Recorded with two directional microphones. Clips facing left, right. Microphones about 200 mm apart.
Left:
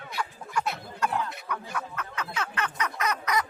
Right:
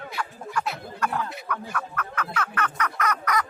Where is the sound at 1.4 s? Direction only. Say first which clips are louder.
Right 2 dB; 15° left (ahead or behind).